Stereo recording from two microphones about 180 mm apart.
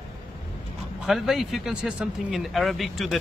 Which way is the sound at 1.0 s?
Centre (ahead or behind).